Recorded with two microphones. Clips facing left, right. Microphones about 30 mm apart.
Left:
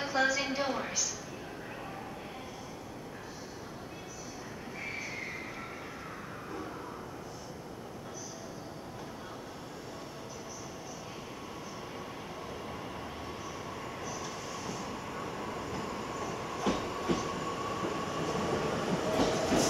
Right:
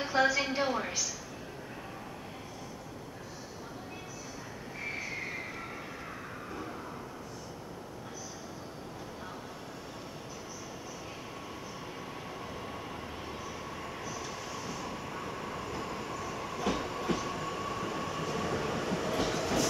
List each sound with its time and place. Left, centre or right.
0.0 s a sound: centre
4.7 s train: centre
13.7 s train: centre